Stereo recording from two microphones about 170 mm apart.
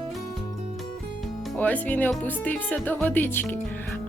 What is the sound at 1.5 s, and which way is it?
A woman's voice, 10° left (ahead or behind).